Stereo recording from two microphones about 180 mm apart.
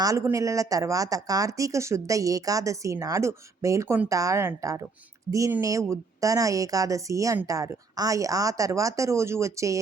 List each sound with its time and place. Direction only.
0.0 s a woman's voice: 15° right (ahead or behind)